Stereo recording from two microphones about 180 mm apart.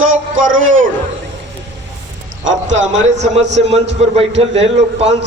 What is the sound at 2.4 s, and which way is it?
Speech, 90° right.